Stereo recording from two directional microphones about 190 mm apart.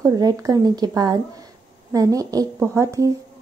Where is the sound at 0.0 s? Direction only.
20° right (ahead or behind).